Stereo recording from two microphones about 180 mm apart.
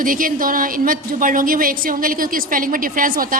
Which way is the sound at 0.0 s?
50° right (ahead or behind).